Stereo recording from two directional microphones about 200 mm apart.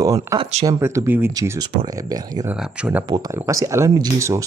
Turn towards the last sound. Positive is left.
turn(degrees=-15)  # may be behind; listen again after turning